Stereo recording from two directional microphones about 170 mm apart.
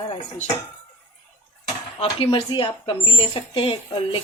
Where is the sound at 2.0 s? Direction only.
35° left (ahead or behind).